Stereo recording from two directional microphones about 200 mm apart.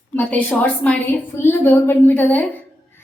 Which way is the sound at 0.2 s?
10° left (ahead or behind).